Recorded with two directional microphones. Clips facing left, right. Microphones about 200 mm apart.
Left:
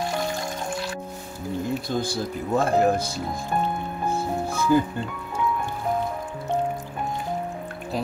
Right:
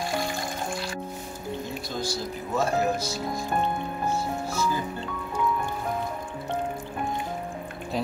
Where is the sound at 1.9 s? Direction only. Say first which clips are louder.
Left 4 dB; 55° left (ahead or behind).